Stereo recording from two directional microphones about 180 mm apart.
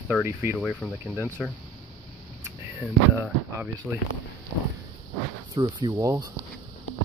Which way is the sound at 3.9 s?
10° right (ahead or behind).